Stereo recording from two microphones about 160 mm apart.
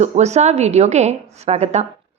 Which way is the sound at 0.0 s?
45° right (ahead or behind).